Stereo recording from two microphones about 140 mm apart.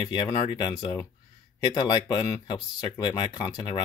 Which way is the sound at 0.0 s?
25° left (ahead or behind).